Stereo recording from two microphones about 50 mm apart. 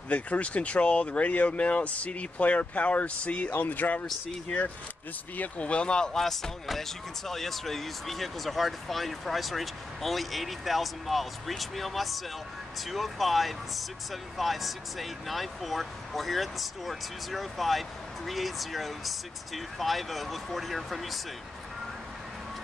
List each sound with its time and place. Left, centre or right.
0.1 s speech: left
3.5 s speech: left
5.4 s speech: left; by 21.2 s centre